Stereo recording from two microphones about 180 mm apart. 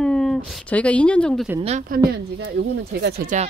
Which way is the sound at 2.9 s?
60° right (ahead or behind).